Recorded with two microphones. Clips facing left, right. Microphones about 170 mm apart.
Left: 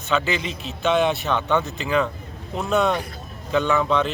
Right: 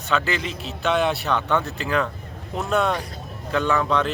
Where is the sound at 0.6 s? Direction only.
5° right (ahead or behind).